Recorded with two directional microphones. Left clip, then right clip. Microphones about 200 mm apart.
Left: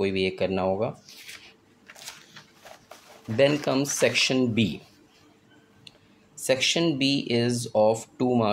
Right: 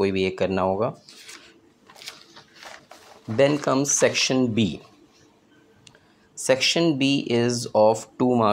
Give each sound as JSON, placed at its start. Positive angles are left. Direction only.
{"t": 0.0, "sound": "speech", "side_deg": -20}
{"t": 3.3, "sound": "speech", "side_deg": -15}
{"t": 6.4, "sound": "speech", "side_deg": -20}